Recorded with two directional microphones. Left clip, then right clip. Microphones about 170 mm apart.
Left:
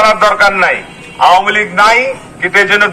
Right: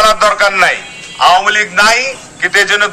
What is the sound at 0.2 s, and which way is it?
A man's voice, 25° right (ahead or behind).